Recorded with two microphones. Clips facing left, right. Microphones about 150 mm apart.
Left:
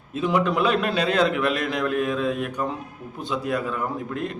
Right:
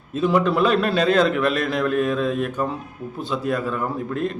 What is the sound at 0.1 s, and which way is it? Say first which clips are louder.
A man's voice: right 3 dB; 10° left (ahead or behind).